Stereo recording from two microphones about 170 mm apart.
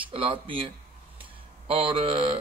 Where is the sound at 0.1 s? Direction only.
30° right (ahead or behind).